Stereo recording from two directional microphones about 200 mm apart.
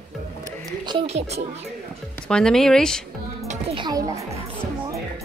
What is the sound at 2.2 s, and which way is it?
Speech, 5° left (ahead or behind).